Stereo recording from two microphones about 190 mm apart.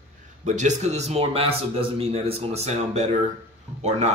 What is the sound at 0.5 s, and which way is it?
A man's voice, 40° right (ahead or behind).